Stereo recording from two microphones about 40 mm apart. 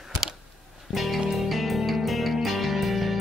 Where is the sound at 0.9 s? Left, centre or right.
Centre.